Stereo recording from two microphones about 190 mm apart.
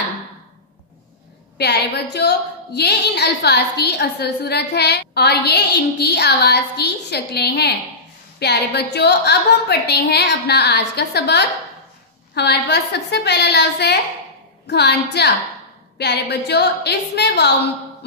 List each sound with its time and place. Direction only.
1.6 s a woman's voice: 60° left (ahead or behind)